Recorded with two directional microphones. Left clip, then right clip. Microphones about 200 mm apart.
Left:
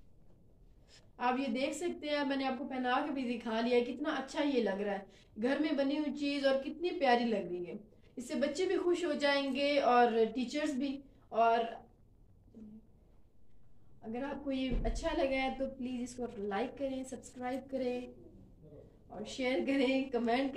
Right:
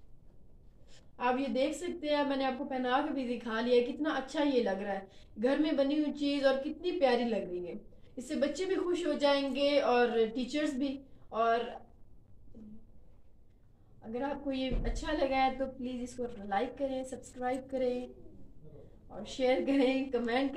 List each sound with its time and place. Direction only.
1.1 s a woman's voice: 40° left (ahead or behind)
14.1 s a woman's voice: 45° left (ahead or behind)
19.2 s a woman's voice: 40° left (ahead or behind)